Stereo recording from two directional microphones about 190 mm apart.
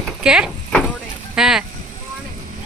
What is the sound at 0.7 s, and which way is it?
Vehicle, 5° left (ahead or behind).